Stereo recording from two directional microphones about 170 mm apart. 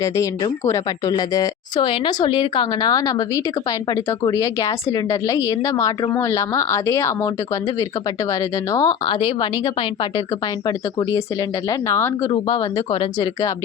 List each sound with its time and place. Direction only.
0.0 s speech: 20° left (ahead or behind)
8.3 s speech: 20° left (ahead or behind)
11.7 s speech: 15° left (ahead or behind)
12.3 s speech: 25° left (ahead or behind)